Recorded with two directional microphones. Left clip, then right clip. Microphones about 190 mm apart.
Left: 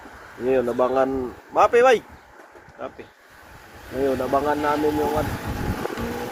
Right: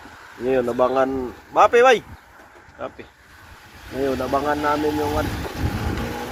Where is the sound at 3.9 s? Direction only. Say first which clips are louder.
Even; centre (ahead or behind).